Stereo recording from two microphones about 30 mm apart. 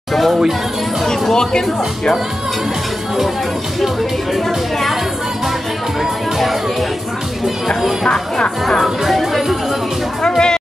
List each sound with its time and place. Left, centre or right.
0.1 s music: centre
1.3 s speech: left
8.8 s music: centre
10.2 s music: left